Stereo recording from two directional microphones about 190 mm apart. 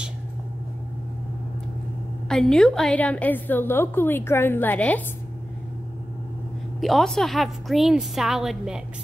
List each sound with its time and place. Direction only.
2.2 s a woman's voice: 5° left (ahead or behind)
6.8 s a woman's voice: centre (ahead or behind)